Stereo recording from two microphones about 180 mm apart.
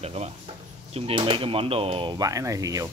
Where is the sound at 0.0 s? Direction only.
35° right (ahead or behind).